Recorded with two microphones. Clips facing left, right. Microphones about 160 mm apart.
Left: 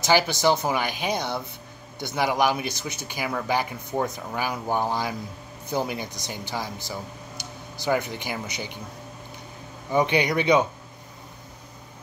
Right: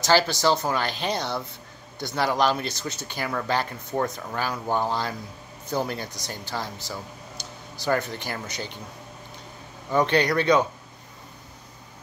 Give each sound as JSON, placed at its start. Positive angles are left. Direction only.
{"t": 0.0, "sound": "speech", "side_deg": 20}
{"t": 9.8, "sound": "speech", "side_deg": 15}